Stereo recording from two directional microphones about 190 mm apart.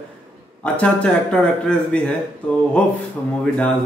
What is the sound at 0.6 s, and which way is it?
Speech, 5° left (ahead or behind).